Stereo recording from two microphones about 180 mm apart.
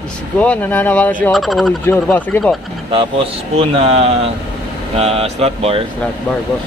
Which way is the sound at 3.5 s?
30° right (ahead or behind).